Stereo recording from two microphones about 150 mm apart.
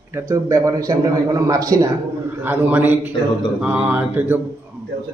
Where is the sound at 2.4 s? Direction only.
15° right (ahead or behind).